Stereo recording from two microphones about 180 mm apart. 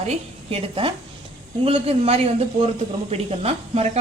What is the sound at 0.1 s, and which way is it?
Speech, 30° right (ahead or behind).